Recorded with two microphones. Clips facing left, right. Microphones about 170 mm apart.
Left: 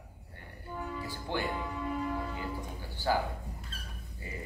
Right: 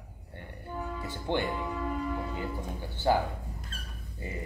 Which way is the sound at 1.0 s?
20° right (ahead or behind).